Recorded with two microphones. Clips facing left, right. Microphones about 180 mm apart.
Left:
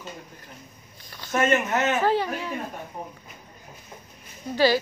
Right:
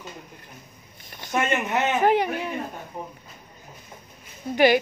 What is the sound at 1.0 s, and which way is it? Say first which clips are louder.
A man's voice: left 2 dB; 20° right (ahead or behind).